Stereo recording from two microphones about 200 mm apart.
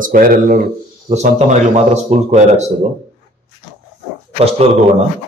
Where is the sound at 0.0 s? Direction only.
45° right (ahead or behind).